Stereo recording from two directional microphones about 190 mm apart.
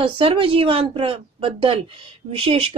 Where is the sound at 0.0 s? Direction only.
30° right (ahead or behind).